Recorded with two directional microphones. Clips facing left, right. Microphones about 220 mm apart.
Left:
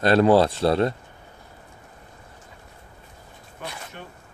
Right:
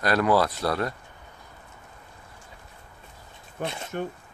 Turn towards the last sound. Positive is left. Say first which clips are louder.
# right 5 dB
turn(degrees=-45)  # may be behind; listen again after turning